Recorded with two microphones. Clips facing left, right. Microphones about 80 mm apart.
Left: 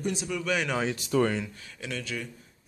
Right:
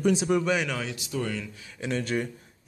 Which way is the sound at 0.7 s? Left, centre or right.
Left.